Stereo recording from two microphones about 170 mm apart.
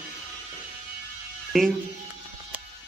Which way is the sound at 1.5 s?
Centre (ahead or behind).